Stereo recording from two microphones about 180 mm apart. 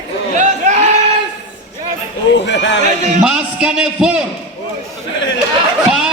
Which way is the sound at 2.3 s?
80° left.